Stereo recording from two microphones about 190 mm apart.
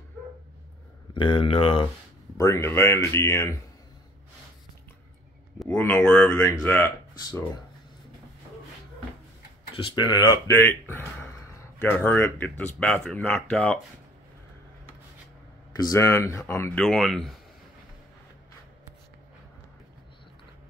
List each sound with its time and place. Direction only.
1.1 s speech: 25° left (ahead or behind)
2.3 s speech: 15° left (ahead or behind)
5.6 s speech: 5° left (ahead or behind)
9.8 s speech: 25° left (ahead or behind)
10.6 s speech: 10° left (ahead or behind)
15.7 s speech: 20° left (ahead or behind)
16.7 s speech: 5° left (ahead or behind)